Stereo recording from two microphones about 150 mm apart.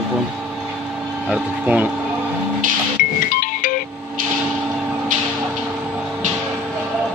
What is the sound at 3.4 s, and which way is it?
Music, 65° left (ahead or behind).